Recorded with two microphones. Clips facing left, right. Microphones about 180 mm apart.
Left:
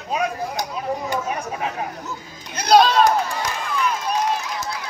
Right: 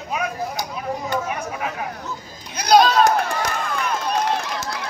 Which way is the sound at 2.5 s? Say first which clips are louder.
Even; centre (ahead or behind).